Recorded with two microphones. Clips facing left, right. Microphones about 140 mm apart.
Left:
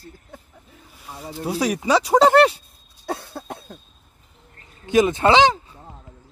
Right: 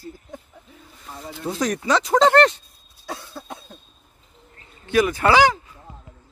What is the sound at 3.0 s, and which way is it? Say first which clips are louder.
Cough: left 5 dB; 60° left (ahead or behind).